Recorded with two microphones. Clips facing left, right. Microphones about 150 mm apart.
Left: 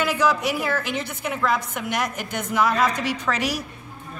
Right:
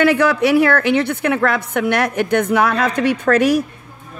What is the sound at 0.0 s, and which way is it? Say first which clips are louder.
A woman's voice: right 8 dB; 65° right (ahead or behind).